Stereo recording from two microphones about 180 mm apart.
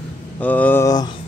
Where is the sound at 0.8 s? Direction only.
20° left (ahead or behind).